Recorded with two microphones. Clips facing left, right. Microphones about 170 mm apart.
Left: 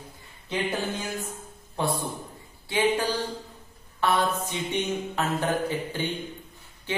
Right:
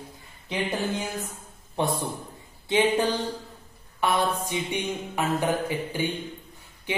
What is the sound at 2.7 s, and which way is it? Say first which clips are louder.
Speech: right 2 dB; 20° right (ahead or behind).